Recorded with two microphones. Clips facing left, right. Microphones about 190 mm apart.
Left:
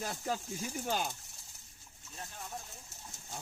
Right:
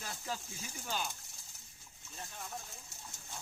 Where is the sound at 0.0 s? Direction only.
45° left (ahead or behind).